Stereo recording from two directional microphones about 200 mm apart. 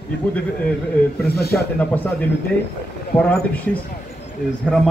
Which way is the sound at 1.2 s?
50° left (ahead or behind).